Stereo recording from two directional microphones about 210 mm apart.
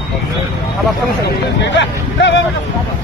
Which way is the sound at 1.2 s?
60° left (ahead or behind).